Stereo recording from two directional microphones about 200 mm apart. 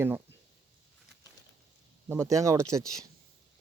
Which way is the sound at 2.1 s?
15° right (ahead or behind).